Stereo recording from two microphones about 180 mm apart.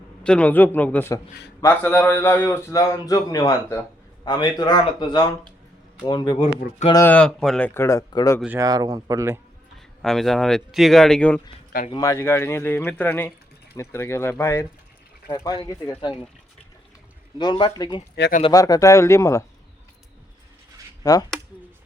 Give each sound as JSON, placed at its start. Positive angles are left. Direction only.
{"t": 0.2, "sound": "a man's voice", "side_deg": 5}
{"t": 6.9, "sound": "a man's voice", "side_deg": 10}
{"t": 8.5, "sound": "speech", "side_deg": -20}
{"t": 9.7, "sound": "speech", "side_deg": 0}
{"t": 11.9, "sound": "a man's voice", "side_deg": 20}
{"t": 17.3, "sound": "a man's voice", "side_deg": 25}
{"t": 21.0, "sound": "speech", "side_deg": 20}